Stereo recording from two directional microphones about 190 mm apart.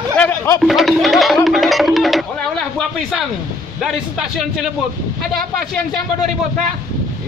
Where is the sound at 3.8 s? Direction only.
Centre (ahead or behind).